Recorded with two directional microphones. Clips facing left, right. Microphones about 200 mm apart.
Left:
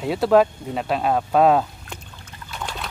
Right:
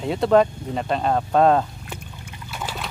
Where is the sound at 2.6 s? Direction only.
5° right (ahead or behind).